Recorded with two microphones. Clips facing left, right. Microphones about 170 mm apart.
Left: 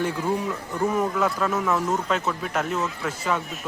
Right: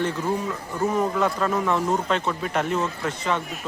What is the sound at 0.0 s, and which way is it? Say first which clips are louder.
Speech: even; 10° left (ahead or behind).